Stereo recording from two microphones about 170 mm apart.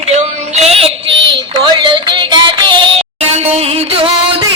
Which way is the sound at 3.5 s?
35° right (ahead or behind).